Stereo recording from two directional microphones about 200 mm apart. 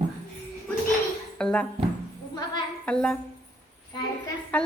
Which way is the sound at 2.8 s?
5° left (ahead or behind).